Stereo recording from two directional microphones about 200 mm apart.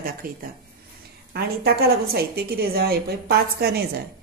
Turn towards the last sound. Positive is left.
turn(degrees=-50)  # may be behind; listen again after turning